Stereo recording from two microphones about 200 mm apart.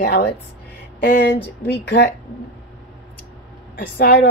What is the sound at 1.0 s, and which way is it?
Speech, 60° left (ahead or behind).